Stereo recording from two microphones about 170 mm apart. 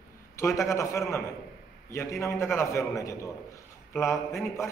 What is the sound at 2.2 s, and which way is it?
A man's voice, 15° left (ahead or behind).